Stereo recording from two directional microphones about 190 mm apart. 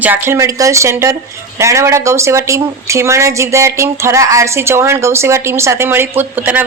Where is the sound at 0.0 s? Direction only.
10° right (ahead or behind).